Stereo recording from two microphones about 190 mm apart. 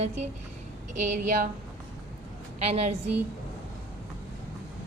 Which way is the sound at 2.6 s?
35° right (ahead or behind).